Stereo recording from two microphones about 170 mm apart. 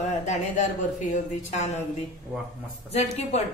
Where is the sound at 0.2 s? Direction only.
45° left (ahead or behind).